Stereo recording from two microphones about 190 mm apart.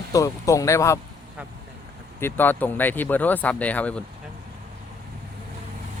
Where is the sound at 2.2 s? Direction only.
10° left (ahead or behind).